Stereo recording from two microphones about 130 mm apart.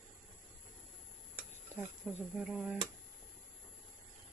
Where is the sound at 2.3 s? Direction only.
5° right (ahead or behind).